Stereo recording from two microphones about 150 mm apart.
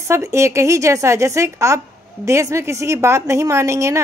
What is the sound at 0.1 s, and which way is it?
A woman's voice, 20° right (ahead or behind).